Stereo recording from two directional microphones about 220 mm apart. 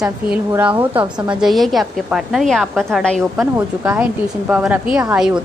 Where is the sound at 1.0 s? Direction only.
20° right (ahead or behind).